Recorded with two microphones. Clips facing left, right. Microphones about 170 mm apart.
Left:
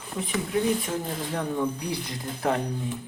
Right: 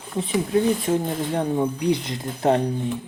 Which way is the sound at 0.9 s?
25° right (ahead or behind).